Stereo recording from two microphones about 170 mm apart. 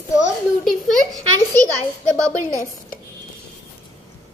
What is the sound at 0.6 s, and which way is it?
Speech, centre (ahead or behind).